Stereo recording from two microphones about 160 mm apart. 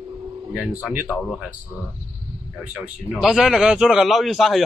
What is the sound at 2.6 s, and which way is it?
A man's voice, 10° right (ahead or behind).